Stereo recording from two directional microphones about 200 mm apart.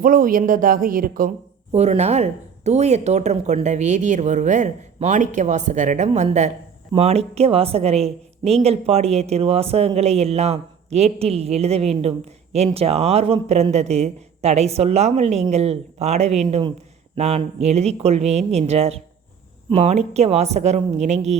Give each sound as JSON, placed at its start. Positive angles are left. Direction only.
{"t": 0.0, "sound": "speech", "side_deg": -45}
{"t": 1.7, "sound": "a woman's voice", "side_deg": -35}